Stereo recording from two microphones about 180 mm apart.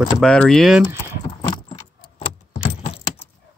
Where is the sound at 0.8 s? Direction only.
15° right (ahead or behind).